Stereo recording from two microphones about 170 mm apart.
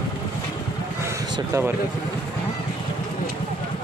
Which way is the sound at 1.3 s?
15° right (ahead or behind).